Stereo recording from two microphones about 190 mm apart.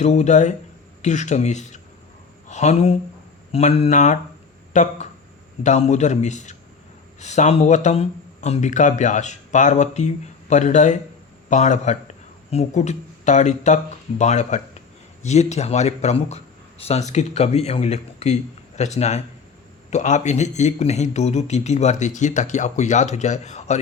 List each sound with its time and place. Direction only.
0.0 s speech: 35° left (ahead or behind)